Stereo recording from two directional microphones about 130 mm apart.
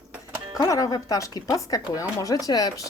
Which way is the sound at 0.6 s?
25° left (ahead or behind).